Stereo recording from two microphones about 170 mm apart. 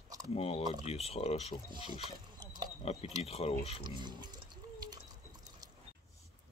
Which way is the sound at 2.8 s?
35° left (ahead or behind).